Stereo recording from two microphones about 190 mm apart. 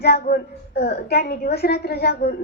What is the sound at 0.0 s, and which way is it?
A woman's voice, 60° left (ahead or behind).